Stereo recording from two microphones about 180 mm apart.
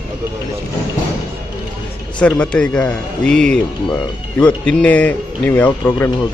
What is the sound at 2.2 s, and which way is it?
A man's voice, 5° left (ahead or behind).